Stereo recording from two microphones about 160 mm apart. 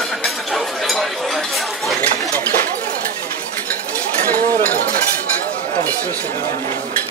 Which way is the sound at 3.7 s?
10° left (ahead or behind).